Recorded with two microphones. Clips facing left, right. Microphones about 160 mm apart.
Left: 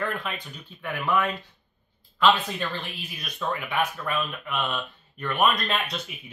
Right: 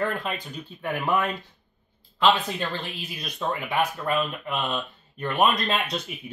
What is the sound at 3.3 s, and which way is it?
Speech, 30° right (ahead or behind).